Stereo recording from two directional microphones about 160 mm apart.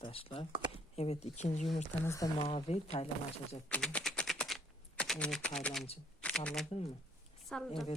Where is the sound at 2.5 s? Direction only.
40° left (ahead or behind).